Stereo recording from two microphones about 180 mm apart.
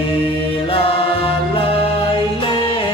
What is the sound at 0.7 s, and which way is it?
Music, 30° left (ahead or behind).